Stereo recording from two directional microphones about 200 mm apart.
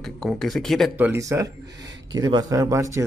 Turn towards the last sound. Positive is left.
turn(degrees=-15)  # may be behind; listen again after turning